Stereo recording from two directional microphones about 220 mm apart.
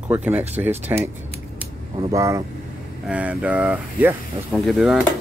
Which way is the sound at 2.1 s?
15° right (ahead or behind).